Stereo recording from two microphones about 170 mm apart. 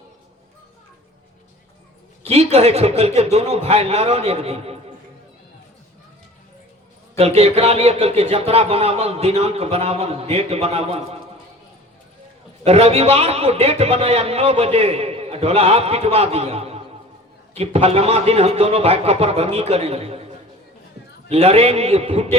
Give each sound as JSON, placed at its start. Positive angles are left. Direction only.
{"t": 2.2, "sound": "a man's voice", "side_deg": -40}
{"t": 7.2, "sound": "a man's voice", "side_deg": -35}
{"t": 12.6, "sound": "a man's voice", "side_deg": -35}
{"t": 21.2, "sound": "a man's voice", "side_deg": -35}